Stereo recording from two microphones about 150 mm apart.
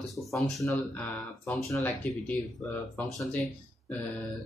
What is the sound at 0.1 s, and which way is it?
Speech, centre (ahead or behind).